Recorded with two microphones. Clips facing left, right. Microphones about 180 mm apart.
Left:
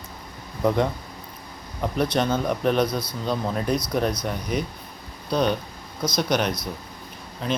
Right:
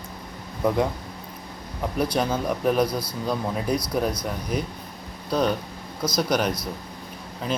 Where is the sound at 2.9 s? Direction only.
30° right (ahead or behind).